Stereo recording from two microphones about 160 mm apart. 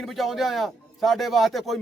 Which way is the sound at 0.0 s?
Centre (ahead or behind).